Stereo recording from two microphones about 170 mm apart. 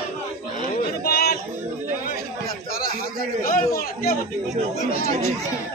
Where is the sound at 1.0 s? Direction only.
65° left (ahead or behind).